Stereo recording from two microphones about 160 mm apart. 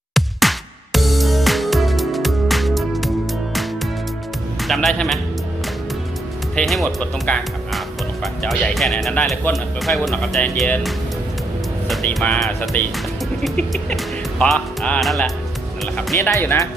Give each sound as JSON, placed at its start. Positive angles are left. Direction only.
{"t": 0.1, "sound": "music", "side_deg": 0}
{"t": 4.7, "sound": "a man's voice", "side_deg": 0}
{"t": 6.6, "sound": "music", "side_deg": 5}
{"t": 11.9, "sound": "speech", "side_deg": 10}
{"t": 13.4, "sound": "music", "side_deg": 5}
{"t": 16.1, "sound": "speech", "side_deg": 15}